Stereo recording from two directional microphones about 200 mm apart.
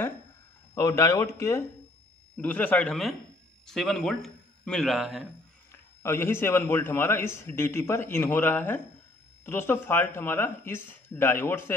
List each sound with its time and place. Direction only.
0.7 s a man's voice: 15° left (ahead or behind); by 5.3 s centre (ahead or behind)
5.7 s speech: 10° left (ahead or behind)